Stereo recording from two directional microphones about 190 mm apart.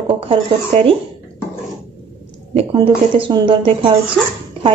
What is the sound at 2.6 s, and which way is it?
A woman's voice, 30° right (ahead or behind).